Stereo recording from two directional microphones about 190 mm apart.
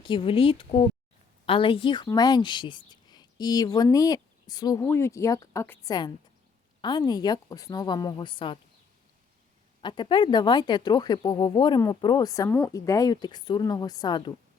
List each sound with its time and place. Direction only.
0.0 s speech: 30° left (ahead or behind)
9.8 s speech: 25° left (ahead or behind)